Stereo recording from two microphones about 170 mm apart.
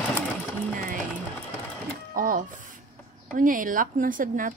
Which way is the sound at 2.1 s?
55° right (ahead or behind).